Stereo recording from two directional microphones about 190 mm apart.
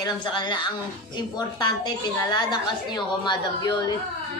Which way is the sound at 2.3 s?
25° left (ahead or behind).